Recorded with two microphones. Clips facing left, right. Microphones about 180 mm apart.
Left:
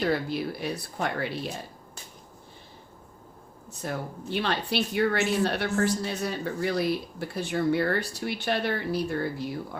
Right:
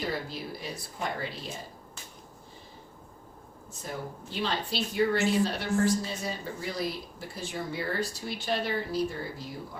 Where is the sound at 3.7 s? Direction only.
65° left (ahead or behind).